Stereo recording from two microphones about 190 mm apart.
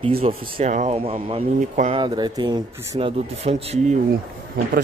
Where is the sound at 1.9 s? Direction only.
25° right (ahead or behind).